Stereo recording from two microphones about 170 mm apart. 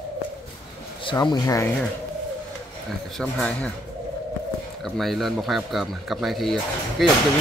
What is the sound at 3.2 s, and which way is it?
Speech, 5° left (ahead or behind).